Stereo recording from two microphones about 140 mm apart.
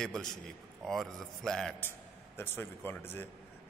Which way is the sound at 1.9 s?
15° left (ahead or behind).